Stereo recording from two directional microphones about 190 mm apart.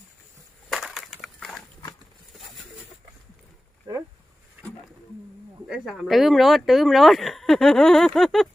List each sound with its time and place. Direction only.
0.7 s crushing: centre (ahead or behind)
3.9 s a sound: 20° right (ahead or behind)
5.6 s speech: centre (ahead or behind)